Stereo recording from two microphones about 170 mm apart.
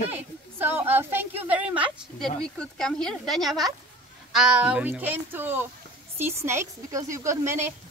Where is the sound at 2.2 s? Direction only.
5° left (ahead or behind).